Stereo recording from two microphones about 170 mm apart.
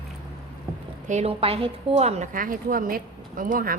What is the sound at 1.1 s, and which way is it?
A woman's voice, 35° right (ahead or behind).